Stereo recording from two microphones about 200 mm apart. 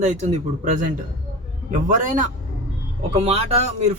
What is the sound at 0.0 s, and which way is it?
Speech, 35° right (ahead or behind).